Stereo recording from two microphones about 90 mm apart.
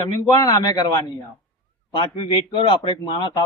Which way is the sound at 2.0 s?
70° left (ahead or behind).